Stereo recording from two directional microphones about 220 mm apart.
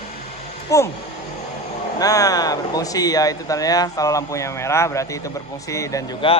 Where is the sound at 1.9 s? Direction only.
15° left (ahead or behind).